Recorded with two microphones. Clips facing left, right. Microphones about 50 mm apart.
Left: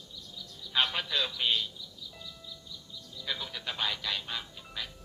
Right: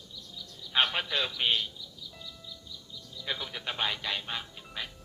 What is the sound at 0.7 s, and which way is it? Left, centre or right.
Speech, right.